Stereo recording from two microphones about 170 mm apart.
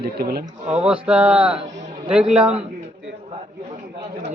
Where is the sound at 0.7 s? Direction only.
10° right (ahead or behind).